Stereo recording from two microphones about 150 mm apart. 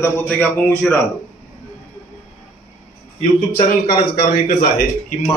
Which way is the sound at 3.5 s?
80° left.